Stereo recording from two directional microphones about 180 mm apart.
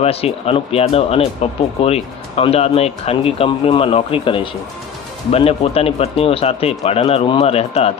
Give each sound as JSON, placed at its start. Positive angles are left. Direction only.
{"t": 0.0, "sound": "speech", "side_deg": 35}